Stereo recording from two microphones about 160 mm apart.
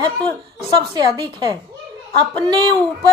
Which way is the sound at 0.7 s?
25° right (ahead or behind).